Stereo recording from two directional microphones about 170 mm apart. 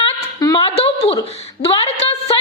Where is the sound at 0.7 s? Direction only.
40° left (ahead or behind).